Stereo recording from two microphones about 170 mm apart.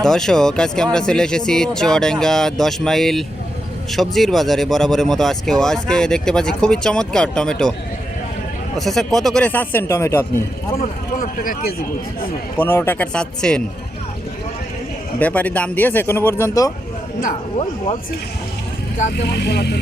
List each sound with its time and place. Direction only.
0.0 s speech: 5° left (ahead or behind)
8.8 s a man's voice: centre (ahead or behind)
10.8 s speech: 55° left (ahead or behind)
12.5 s a man's voice: 15° left (ahead or behind)
15.2 s a man's voice: 10° left (ahead or behind)
19.3 s speech: 75° left (ahead or behind)